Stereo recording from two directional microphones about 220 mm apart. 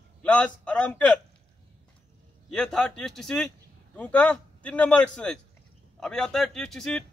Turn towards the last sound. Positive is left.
turn(degrees=5)  # may be behind; listen again after turning